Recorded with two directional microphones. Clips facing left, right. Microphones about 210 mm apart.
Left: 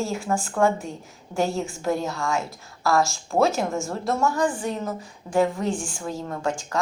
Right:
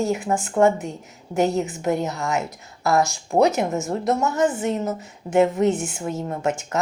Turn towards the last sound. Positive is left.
turn(degrees=-20)  # may be behind; listen again after turning